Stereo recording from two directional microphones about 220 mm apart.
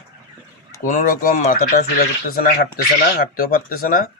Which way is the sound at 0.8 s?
40° left (ahead or behind).